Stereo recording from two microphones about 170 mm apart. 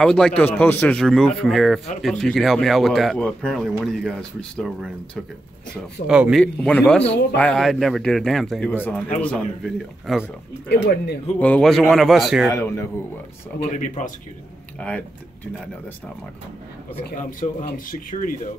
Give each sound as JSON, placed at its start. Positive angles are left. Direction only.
{"t": 0.0, "sound": "speech", "side_deg": 5}
{"t": 6.4, "sound": "speech", "side_deg": 5}
{"t": 10.7, "sound": "speech", "side_deg": 75}
{"t": 11.3, "sound": "speech", "side_deg": 10}
{"t": 12.4, "sound": "speech", "side_deg": 15}
{"t": 13.7, "sound": "speech", "side_deg": 45}
{"t": 14.8, "sound": "speech", "side_deg": 5}
{"t": 17.2, "sound": "speech", "side_deg": 50}